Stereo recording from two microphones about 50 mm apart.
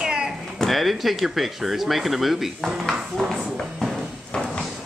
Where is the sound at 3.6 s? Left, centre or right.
Centre.